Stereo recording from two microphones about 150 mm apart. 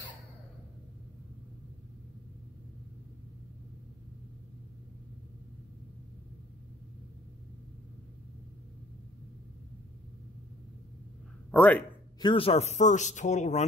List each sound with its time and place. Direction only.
11.5 s speech: 10° left (ahead or behind)
12.2 s speech: 35° left (ahead or behind); by 13.7 s 50° left (ahead or behind)